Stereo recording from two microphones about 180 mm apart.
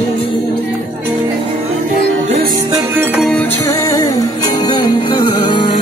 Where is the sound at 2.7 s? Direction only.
10° right (ahead or behind).